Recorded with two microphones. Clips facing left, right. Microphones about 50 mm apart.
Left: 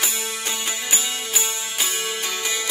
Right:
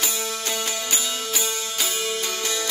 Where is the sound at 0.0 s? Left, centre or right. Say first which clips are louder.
Even; centre.